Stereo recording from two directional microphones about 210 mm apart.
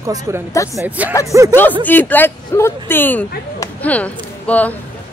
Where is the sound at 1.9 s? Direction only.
10° left (ahead or behind).